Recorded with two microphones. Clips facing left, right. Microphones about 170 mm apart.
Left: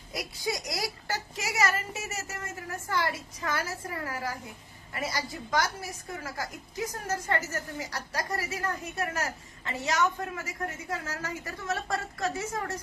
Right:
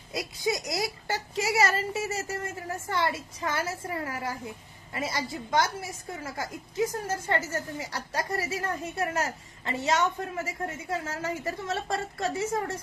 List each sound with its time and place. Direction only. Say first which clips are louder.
0.1 s a woman's voice: right 4 dB; 25° right (ahead or behind)